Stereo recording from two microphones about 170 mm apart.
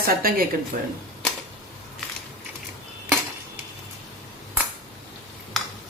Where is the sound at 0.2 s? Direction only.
60° right (ahead or behind).